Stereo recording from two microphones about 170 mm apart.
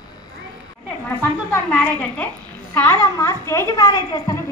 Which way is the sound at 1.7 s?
5° left (ahead or behind).